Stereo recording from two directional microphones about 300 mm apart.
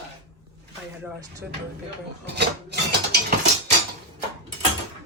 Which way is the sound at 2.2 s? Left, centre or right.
Right.